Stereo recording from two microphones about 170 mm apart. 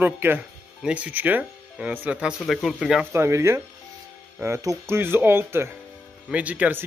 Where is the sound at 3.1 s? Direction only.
15° right (ahead or behind).